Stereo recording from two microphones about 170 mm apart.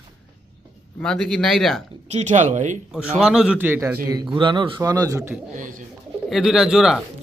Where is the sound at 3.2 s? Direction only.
5° right (ahead or behind).